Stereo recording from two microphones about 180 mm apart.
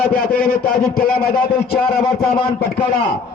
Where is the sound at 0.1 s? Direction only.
55° left (ahead or behind).